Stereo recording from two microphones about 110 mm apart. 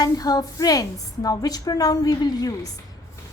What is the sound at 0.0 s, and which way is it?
Speech, 35° left (ahead or behind).